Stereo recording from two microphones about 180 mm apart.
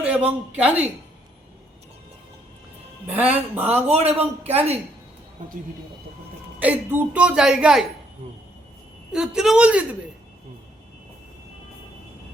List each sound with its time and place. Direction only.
0.0 s a woman's voice: 10° right (ahead or behind)
3.1 s a woman's voice: 10° right (ahead or behind)
3.8 s a man's voice: 35° right (ahead or behind)
4.2 s a woman's voice: 10° right (ahead or behind)
6.6 s a woman's voice: 10° right (ahead or behind)
9.1 s a woman's voice: 5° right (ahead or behind)